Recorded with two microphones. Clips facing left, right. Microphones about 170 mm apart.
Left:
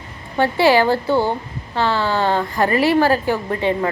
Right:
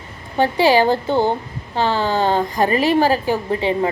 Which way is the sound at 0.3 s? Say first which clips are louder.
Even; 15° right (ahead or behind).